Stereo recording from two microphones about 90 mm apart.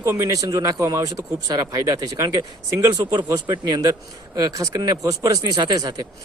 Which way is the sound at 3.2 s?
55° right (ahead or behind).